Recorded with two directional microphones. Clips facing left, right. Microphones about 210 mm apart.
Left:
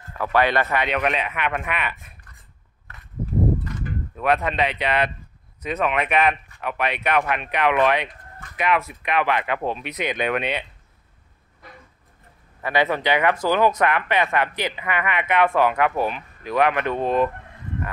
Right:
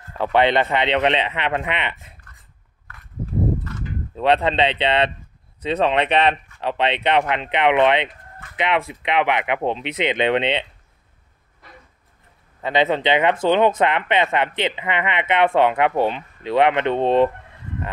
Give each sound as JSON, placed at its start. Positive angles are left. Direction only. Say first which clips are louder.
{"t": 0.2, "sound": "speech", "louder": "right 3 dB", "side_deg": -25}
{"t": 4.1, "sound": "speech", "louder": "right 4 dB", "side_deg": -25}
{"t": 12.6, "sound": "speech", "louder": "right 3 dB", "side_deg": -20}